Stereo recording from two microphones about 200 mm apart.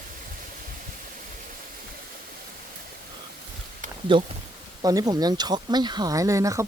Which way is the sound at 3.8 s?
40° right (ahead or behind).